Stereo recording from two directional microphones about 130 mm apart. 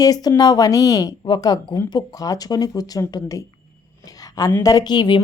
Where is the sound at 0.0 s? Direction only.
30° left (ahead or behind).